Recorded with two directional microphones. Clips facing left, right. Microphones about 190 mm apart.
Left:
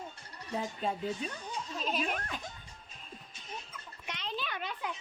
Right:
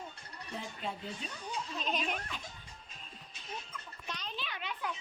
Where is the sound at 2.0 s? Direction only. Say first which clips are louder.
Left 2 dB; 45° left (ahead or behind).